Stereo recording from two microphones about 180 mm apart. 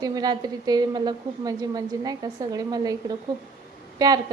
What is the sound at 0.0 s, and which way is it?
A woman's voice, 20° right (ahead or behind).